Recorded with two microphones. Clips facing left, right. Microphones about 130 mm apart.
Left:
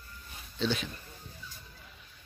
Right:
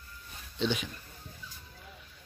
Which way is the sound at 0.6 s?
15° right (ahead or behind).